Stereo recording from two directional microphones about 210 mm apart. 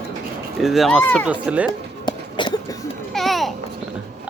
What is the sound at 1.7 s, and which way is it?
Music, 20° left (ahead or behind).